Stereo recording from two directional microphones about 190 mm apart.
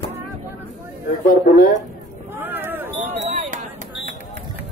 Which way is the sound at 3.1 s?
40° right (ahead or behind).